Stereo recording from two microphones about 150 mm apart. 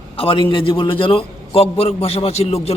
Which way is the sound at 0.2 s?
35° left (ahead or behind).